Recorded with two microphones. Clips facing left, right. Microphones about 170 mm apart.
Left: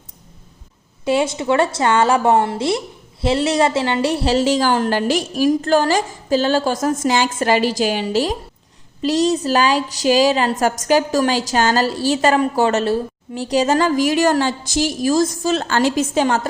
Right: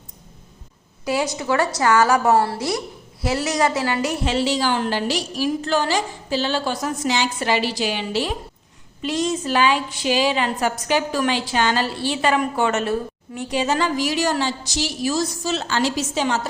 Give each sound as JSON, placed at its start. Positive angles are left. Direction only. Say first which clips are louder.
{"t": 1.0, "sound": "a woman's voice", "louder": "left 5 dB", "side_deg": 25}